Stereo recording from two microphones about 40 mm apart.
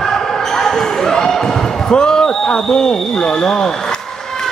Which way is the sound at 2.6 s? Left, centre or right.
Centre.